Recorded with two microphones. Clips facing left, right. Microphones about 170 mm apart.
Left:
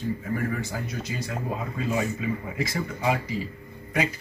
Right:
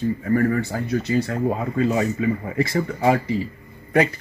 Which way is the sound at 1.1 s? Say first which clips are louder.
Right 15 dB; 60° right (ahead or behind).